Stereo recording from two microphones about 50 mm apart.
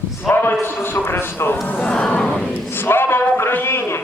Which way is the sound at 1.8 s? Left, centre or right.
Left.